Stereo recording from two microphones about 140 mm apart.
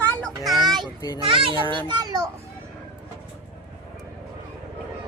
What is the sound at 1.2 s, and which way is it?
Speech, 40° right (ahead or behind).